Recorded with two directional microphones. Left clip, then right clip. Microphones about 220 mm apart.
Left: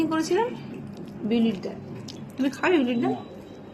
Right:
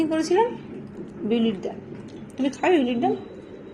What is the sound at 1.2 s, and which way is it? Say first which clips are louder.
A woman's voice: right 2 dB; 10° left (ahead or behind).